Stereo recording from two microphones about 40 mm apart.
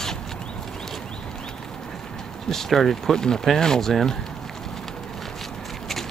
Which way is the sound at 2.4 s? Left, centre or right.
Centre.